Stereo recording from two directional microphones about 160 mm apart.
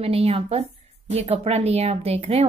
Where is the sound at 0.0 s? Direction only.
40° right (ahead or behind).